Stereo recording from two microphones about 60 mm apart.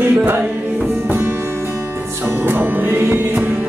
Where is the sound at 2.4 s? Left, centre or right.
Right.